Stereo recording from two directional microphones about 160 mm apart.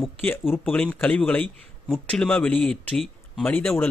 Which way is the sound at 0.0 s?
10° left (ahead or behind).